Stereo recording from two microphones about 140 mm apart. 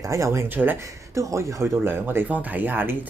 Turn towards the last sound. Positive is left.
turn(degrees=-15)  # may be behind; listen again after turning